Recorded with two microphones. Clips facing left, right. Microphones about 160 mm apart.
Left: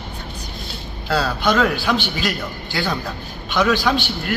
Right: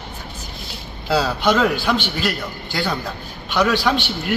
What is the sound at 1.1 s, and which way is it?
A man's voice, 10° right (ahead or behind).